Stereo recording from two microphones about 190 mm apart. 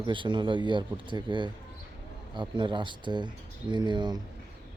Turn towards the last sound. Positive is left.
turn(degrees=-25)  # may be behind; listen again after turning